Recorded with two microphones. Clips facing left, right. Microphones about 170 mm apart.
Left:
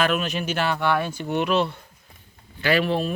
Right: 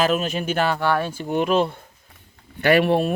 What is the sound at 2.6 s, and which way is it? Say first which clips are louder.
Speech: right 5 dB; 60° right (ahead or behind).